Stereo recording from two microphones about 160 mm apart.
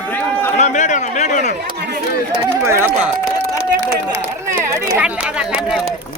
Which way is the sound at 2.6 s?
15° right (ahead or behind).